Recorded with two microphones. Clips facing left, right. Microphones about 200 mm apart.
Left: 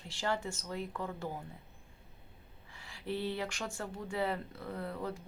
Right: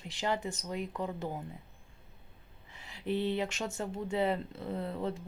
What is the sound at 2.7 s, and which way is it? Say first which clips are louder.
Speech: right 4 dB; 20° right (ahead or behind).